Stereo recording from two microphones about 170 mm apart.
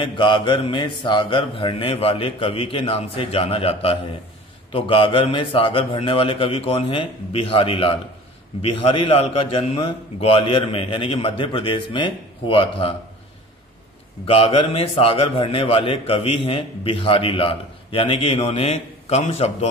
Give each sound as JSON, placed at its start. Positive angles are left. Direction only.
{"t": 0.0, "sound": "a man's voice", "side_deg": 30}
{"t": 14.2, "sound": "a man's voice", "side_deg": 35}